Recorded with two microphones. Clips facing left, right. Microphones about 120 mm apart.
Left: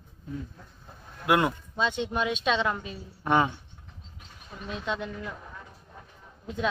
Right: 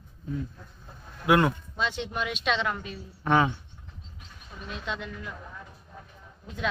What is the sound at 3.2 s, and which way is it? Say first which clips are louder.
Speech: right 1 dB; 5° left (ahead or behind).